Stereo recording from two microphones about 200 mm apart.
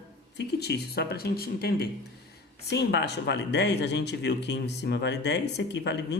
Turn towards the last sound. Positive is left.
turn(degrees=60)  # may be behind; listen again after turning